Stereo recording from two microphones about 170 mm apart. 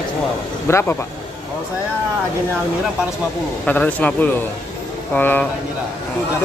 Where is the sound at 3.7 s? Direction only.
10° left (ahead or behind).